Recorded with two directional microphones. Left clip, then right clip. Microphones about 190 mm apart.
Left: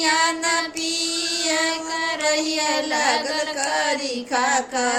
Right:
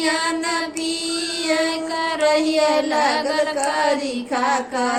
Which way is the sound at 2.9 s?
15° left (ahead or behind).